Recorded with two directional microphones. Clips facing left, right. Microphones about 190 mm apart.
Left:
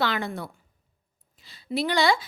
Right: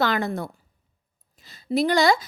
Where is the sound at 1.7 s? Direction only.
45° right (ahead or behind).